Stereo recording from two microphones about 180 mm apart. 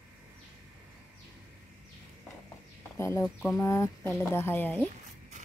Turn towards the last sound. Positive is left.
turn(degrees=10)  # may be behind; listen again after turning